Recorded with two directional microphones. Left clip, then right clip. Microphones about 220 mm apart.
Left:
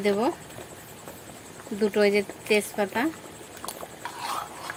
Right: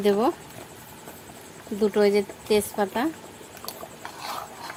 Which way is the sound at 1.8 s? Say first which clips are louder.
Right 1 dB; 10° right (ahead or behind).